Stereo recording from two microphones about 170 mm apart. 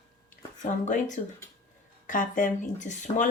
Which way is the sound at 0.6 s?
45° left (ahead or behind).